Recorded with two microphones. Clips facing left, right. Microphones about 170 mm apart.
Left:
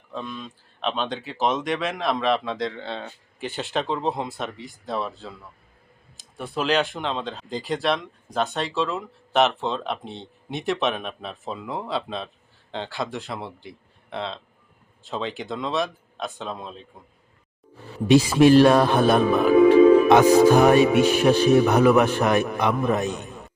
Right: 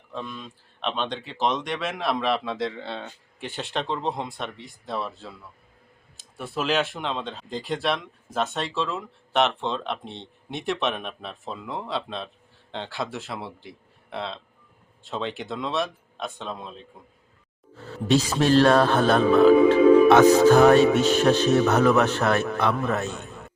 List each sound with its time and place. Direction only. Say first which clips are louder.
0.1 s speech: left 2 dB; centre (ahead or behind)
17.7 s speech: left 5 dB; 15° left (ahead or behind)